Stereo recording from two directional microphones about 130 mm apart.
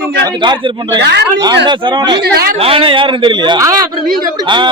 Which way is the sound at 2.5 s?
45° right (ahead or behind).